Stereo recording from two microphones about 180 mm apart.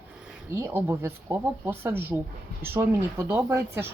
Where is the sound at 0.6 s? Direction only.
15° right (ahead or behind).